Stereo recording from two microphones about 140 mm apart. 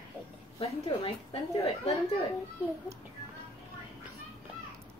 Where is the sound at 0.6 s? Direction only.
45° left (ahead or behind).